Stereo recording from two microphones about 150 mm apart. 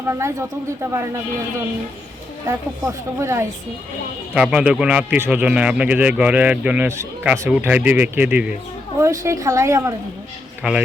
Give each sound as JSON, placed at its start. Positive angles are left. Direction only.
{"t": 0.1, "sound": "a woman's voice", "side_deg": -20}
{"t": 2.5, "sound": "speech", "side_deg": -20}
{"t": 4.4, "sound": "speech", "side_deg": -5}
{"t": 9.0, "sound": "a woman's voice", "side_deg": -20}
{"t": 10.6, "sound": "speech", "side_deg": -5}